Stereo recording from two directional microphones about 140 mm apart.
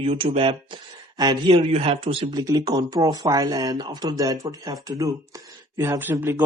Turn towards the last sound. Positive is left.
turn(degrees=-15)  # may be behind; listen again after turning